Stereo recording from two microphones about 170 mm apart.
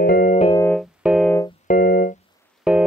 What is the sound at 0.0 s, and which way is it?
Keyboard, 60° left (ahead or behind).